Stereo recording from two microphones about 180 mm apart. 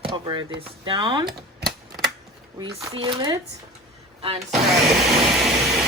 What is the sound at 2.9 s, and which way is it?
Speech, 30° right (ahead or behind).